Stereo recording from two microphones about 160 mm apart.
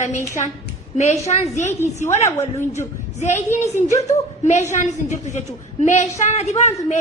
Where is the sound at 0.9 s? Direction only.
45° left (ahead or behind).